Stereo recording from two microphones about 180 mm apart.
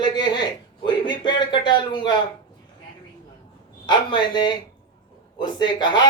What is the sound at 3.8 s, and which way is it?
Speech, 25° left (ahead or behind).